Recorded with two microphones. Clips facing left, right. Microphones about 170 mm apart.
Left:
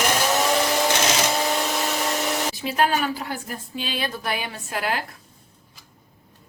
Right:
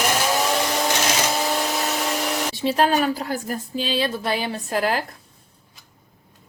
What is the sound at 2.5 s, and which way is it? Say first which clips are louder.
A woman's voice: right 5 dB; 30° right (ahead or behind).